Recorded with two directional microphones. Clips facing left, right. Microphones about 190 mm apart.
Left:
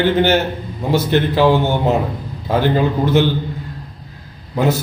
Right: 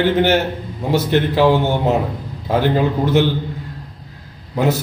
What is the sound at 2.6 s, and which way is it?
Speech, 10° right (ahead or behind).